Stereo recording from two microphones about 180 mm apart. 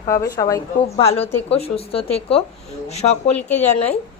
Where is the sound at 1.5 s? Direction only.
35° left (ahead or behind).